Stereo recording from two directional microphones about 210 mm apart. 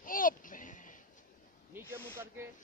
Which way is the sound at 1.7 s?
10° right (ahead or behind).